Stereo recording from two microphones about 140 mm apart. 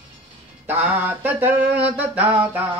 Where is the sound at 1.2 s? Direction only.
15° right (ahead or behind).